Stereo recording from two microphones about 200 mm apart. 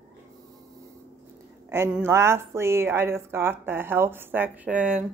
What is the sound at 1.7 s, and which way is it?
A woman's voice, 10° right (ahead or behind).